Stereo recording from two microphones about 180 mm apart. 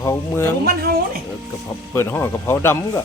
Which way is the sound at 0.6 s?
60° right (ahead or behind).